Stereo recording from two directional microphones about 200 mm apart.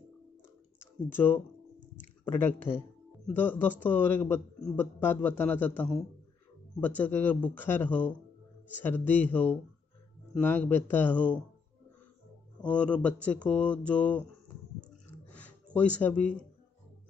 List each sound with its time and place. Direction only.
1.1 s a man's voice: 10° left (ahead or behind)
2.7 s speech: 30° left (ahead or behind)
3.3 s a man's voice: 10° left (ahead or behind)
7.0 s a man's voice: 10° left (ahead or behind)
12.6 s a man's voice: 5° left (ahead or behind)
15.3 s a sound: 5° left (ahead or behind)
16.0 s a man's voice: 5° left (ahead or behind)